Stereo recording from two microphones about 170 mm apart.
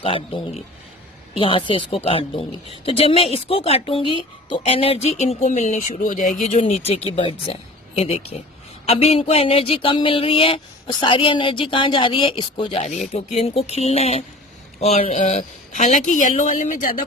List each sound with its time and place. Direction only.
0.0 s a woman's voice: 35° left (ahead or behind); by 17.0 s 50° left (ahead or behind)